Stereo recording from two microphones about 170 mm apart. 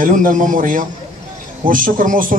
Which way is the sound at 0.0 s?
50° right (ahead or behind).